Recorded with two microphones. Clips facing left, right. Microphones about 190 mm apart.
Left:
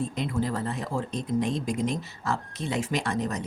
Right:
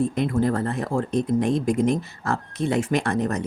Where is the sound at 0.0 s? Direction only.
55° right (ahead or behind).